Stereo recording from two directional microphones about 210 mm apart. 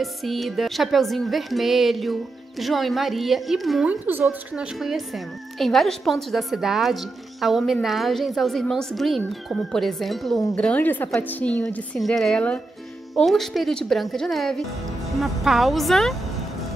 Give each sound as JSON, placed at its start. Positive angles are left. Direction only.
{"t": 0.0, "sound": "a woman's voice", "side_deg": 0}